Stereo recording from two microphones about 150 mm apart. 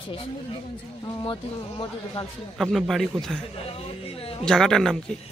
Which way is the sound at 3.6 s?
40° left (ahead or behind).